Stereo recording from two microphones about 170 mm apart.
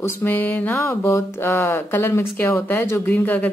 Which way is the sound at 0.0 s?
15° left (ahead or behind).